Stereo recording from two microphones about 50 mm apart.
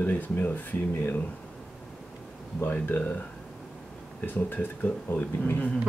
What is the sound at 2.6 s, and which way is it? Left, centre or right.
Speech, left.